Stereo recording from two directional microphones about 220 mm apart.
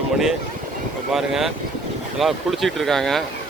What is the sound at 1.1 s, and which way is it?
Speech, centre (ahead or behind).